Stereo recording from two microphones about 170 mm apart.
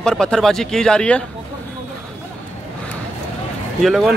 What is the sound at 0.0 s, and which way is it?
Speech, 5° left (ahead or behind).